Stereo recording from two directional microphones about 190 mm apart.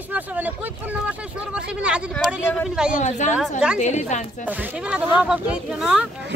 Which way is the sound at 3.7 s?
40° left (ahead or behind).